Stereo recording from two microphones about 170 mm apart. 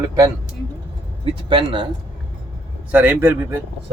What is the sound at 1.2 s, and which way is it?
Speech, 30° right (ahead or behind).